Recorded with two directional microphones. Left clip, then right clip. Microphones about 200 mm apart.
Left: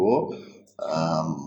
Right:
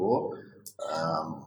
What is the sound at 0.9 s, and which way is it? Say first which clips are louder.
Speech: left 4 dB; 40° left (ahead or behind).